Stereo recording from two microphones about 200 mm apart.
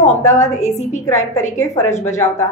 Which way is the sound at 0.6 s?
35° left (ahead or behind).